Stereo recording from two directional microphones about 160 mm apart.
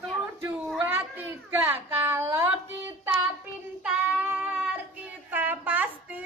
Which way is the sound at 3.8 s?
5° right (ahead or behind).